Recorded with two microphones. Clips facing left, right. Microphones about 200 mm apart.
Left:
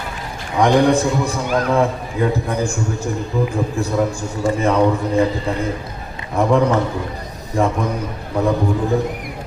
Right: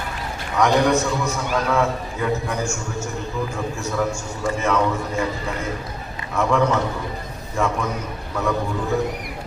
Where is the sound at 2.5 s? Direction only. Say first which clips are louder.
Left 5 dB; 35° left (ahead or behind).